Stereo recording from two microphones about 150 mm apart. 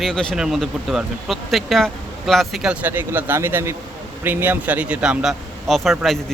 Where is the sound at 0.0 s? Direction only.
5° left (ahead or behind).